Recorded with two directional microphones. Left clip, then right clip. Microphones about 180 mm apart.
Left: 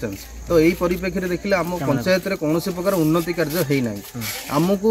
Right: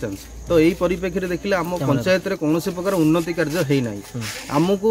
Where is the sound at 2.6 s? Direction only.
15° right (ahead or behind).